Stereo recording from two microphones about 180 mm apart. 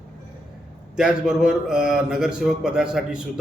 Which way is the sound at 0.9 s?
5° right (ahead or behind).